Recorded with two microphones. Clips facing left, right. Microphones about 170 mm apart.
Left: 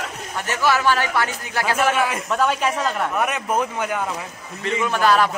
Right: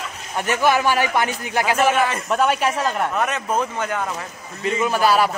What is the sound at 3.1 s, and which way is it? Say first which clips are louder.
Speech: even; 15° left (ahead or behind).